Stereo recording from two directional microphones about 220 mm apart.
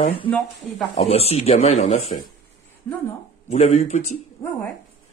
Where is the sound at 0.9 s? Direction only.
25° left (ahead or behind).